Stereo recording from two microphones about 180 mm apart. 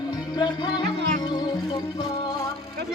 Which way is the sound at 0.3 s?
25° left (ahead or behind).